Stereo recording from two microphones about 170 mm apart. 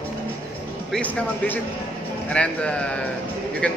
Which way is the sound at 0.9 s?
5° left (ahead or behind).